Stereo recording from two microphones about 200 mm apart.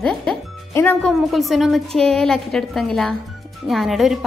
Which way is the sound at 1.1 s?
Centre (ahead or behind).